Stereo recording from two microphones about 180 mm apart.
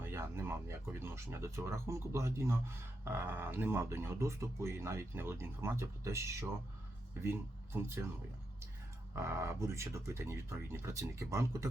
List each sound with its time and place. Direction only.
0.0 s speech: 15° right (ahead or behind)
9.1 s speech: 15° right (ahead or behind)